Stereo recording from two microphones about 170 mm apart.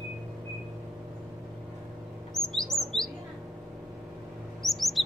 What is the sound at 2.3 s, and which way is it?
Chirp, centre (ahead or behind).